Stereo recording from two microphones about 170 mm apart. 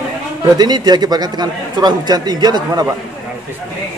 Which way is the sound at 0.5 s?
25° right (ahead or behind).